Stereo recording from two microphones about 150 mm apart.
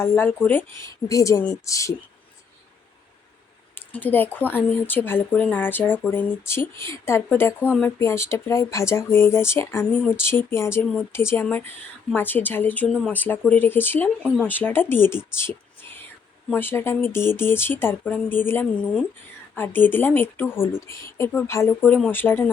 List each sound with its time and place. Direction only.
0.0 s a woman's voice: 15° left (ahead or behind)
3.8 s speech: 10° left (ahead or behind)